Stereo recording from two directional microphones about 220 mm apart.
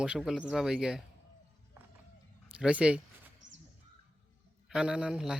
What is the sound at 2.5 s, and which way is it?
Speech, 5° right (ahead or behind).